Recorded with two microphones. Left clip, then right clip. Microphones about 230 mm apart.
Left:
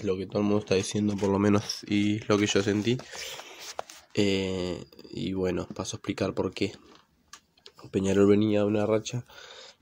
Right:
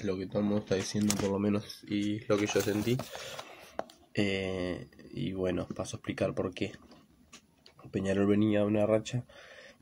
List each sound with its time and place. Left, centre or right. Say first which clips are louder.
0.0 s speech: left 5 dB; left
7.9 s speech: left 7 dB; left